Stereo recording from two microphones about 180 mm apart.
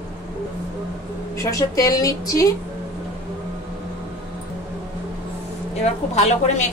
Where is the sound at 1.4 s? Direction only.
20° left (ahead or behind).